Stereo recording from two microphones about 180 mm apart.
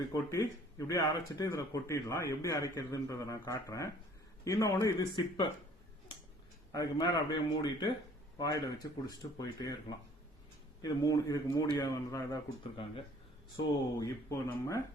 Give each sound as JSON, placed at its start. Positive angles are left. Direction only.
{"t": 0.1, "sound": "speech", "side_deg": 15}
{"t": 6.7, "sound": "speech", "side_deg": 20}
{"t": 10.8, "sound": "speech", "side_deg": 20}
{"t": 14.0, "sound": "speech", "side_deg": 15}